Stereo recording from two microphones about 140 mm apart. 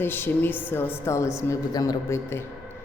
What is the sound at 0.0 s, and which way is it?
A woman's voice, 15° left (ahead or behind).